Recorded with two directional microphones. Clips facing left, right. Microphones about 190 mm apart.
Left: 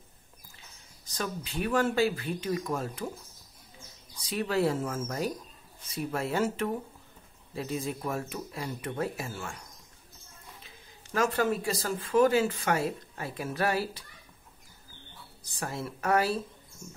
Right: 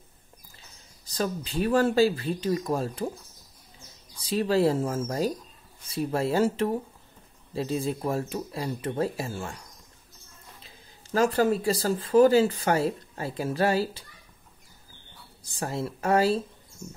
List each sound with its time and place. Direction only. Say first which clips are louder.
1.0 s speech: right 6 dB; 30° right (ahead or behind)
4.2 s speech: right 5 dB; 30° right (ahead or behind)
10.6 s speech: right 1 dB; 35° right (ahead or behind)
15.6 s speech: right 4 dB; 30° right (ahead or behind)